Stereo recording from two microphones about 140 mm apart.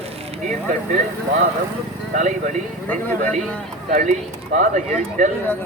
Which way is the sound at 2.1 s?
60° right (ahead or behind).